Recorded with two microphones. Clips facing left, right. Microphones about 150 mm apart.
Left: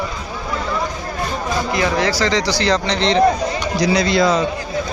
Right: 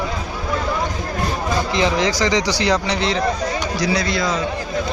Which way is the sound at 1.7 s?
20° right (ahead or behind).